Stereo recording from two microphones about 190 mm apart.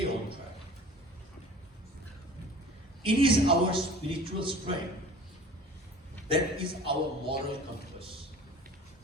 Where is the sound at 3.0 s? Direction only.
30° right (ahead or behind).